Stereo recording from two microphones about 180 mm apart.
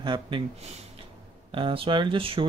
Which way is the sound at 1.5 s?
30° right (ahead or behind).